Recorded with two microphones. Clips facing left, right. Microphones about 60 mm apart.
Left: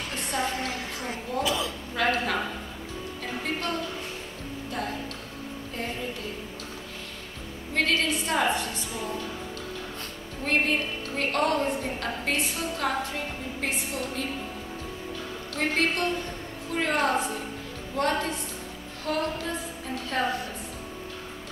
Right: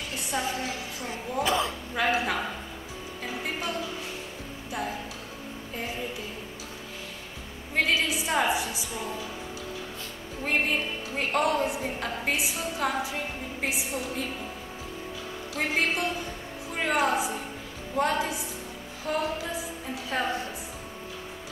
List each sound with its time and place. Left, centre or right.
0.3 s a woman's voice: centre
1.4 s speech: right
2.0 s a woman's voice: centre
3.3 s music: centre
7.7 s a woman's voice: centre
10.4 s a woman's voice: centre
15.5 s a woman's voice: centre